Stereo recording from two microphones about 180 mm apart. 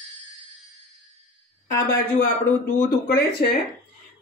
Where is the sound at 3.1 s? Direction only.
60° left (ahead or behind).